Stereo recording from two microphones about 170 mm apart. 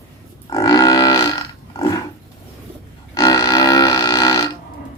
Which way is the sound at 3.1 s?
20° left (ahead or behind).